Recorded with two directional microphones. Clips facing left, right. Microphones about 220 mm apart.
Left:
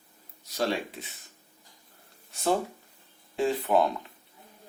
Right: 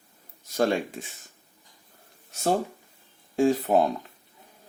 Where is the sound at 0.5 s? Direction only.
50° right (ahead or behind).